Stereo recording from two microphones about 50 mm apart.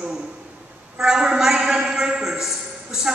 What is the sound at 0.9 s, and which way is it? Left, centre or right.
A man's voice, centre.